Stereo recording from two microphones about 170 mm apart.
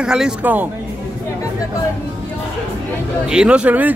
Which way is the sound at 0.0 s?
5° right (ahead or behind).